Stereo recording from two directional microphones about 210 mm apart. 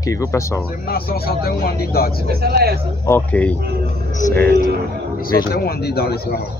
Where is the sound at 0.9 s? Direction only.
45° left (ahead or behind).